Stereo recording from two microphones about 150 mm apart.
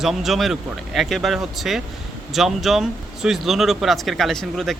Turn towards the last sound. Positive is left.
turn(degrees=0)  # may be behind; listen again after turning